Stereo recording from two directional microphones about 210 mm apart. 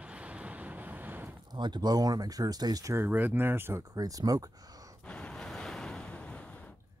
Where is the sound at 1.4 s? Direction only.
20° right (ahead or behind).